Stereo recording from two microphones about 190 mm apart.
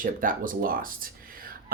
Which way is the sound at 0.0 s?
45° right (ahead or behind).